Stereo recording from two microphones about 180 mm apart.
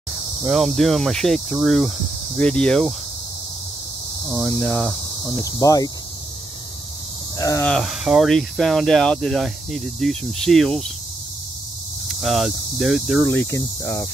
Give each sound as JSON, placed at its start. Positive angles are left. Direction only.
{"t": 0.5, "sound": "speech", "side_deg": 0}
{"t": 4.4, "sound": "speech", "side_deg": 5}
{"t": 5.4, "sound": "speech", "side_deg": 20}
{"t": 7.3, "sound": "speech", "side_deg": 20}
{"t": 7.6, "sound": "speech", "side_deg": 0}
{"t": 12.1, "sound": "speech", "side_deg": 0}
{"t": 13.4, "sound": "speech", "side_deg": 15}